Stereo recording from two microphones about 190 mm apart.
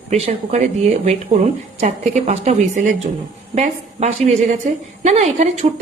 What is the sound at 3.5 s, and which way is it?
A woman's voice, 35° right (ahead or behind).